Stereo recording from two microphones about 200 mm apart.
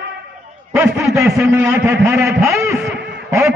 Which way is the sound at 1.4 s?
15° right (ahead or behind).